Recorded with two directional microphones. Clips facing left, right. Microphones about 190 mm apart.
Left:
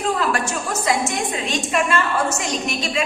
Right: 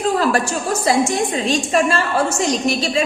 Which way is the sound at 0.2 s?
35° right (ahead or behind).